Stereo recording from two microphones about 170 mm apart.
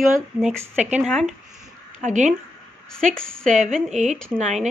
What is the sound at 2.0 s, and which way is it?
Speech, 45° right (ahead or behind).